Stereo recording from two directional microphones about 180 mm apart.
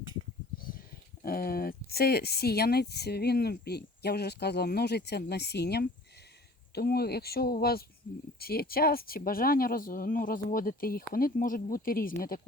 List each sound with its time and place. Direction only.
0.6 s speech: 55° left (ahead or behind)